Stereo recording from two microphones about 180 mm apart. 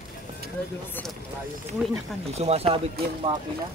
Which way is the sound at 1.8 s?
5° right (ahead or behind).